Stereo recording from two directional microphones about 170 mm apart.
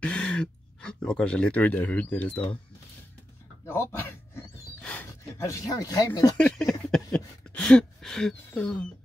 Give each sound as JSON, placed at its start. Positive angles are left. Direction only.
{"t": 0.0, "sound": "speech", "side_deg": 5}
{"t": 3.6, "sound": "speech", "side_deg": 15}
{"t": 5.4, "sound": "speech", "side_deg": 20}
{"t": 6.3, "sound": "a sound", "side_deg": 5}